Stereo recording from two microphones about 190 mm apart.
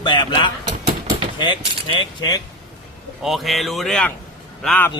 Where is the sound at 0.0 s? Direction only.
25° left (ahead or behind).